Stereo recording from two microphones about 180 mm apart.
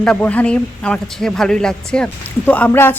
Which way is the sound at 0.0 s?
5° left (ahead or behind).